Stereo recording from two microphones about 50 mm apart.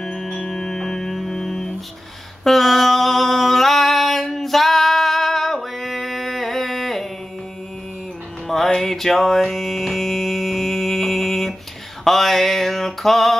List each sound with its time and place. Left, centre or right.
0.0 s music: centre
2.4 s a sound: centre
8.5 s music: centre
12.0 s mantra: centre